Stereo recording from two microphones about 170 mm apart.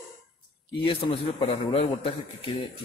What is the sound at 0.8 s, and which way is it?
A man's voice, 30° left (ahead or behind).